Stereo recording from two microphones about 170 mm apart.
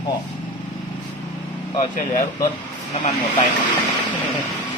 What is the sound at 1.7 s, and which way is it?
Speech, 50° left (ahead or behind).